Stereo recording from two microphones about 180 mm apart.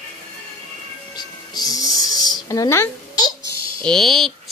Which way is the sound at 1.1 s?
20° left (ahead or behind).